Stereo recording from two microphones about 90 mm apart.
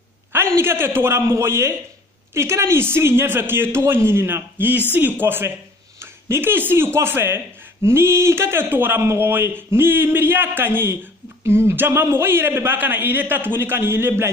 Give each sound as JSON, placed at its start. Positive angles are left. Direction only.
{"t": 0.3, "sound": "a man's voice", "side_deg": -25}